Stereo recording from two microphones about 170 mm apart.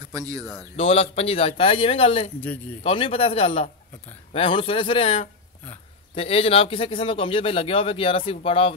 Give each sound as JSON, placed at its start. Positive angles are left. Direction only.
{"t": 0.1, "sound": "speech", "side_deg": -20}
{"t": 0.7, "sound": "speech", "side_deg": 35}